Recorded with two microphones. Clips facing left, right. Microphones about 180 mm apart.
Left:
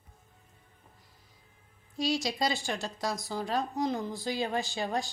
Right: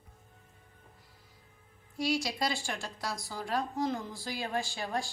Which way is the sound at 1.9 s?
20° left (ahead or behind).